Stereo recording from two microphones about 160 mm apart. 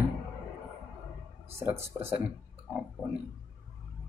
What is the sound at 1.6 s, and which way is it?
Speech, 15° right (ahead or behind).